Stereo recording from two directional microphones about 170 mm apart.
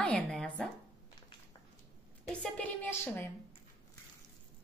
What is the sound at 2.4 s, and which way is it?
Speech, 10° left (ahead or behind).